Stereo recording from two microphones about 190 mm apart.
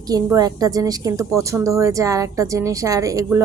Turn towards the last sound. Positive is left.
turn(degrees=-15)  # may be behind; listen again after turning